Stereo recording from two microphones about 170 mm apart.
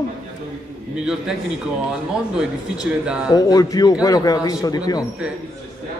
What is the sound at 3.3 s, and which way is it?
Speech, 20° left (ahead or behind).